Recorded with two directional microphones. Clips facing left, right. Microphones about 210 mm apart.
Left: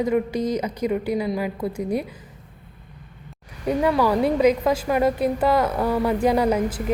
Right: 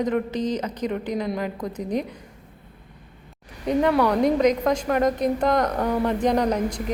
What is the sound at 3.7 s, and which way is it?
A woman's voice, 5° left (ahead or behind).